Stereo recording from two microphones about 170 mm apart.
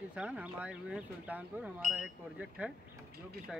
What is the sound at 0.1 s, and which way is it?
Speech, 5° right (ahead or behind).